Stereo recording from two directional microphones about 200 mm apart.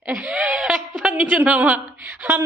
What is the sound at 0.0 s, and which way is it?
A woman's voice, 5° right (ahead or behind).